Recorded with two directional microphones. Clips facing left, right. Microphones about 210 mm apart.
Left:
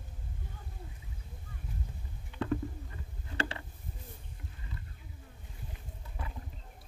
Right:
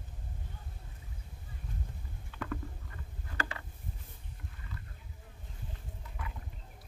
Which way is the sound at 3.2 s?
30° left (ahead or behind).